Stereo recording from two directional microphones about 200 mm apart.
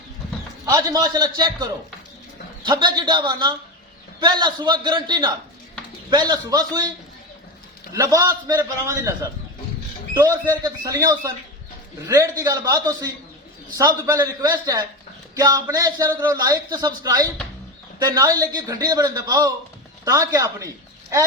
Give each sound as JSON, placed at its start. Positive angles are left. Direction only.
{"t": 0.6, "sound": "a man's voice", "side_deg": -20}
{"t": 7.9, "sound": "a man's voice", "side_deg": -15}
{"t": 10.6, "sound": "a man's voice", "side_deg": -15}
{"t": 15.4, "sound": "a man's voice", "side_deg": -15}